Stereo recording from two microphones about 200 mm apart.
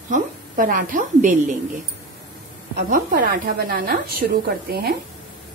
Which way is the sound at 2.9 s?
45° right (ahead or behind).